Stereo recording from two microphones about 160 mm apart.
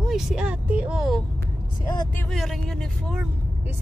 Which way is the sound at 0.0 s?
Centre (ahead or behind).